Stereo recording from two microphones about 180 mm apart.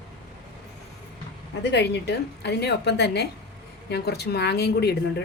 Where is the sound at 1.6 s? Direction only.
70° left (ahead or behind).